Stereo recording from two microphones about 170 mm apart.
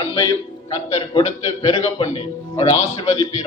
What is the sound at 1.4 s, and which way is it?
A man's voice, 40° left (ahead or behind).